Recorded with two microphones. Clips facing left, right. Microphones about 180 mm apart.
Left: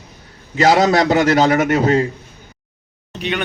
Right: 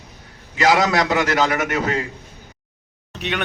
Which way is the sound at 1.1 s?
40° left (ahead or behind).